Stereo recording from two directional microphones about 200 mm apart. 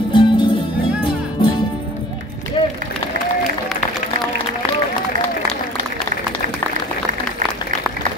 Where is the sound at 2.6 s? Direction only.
25° left (ahead or behind).